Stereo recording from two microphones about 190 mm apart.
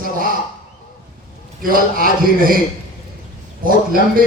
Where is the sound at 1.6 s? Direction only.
50° right (ahead or behind).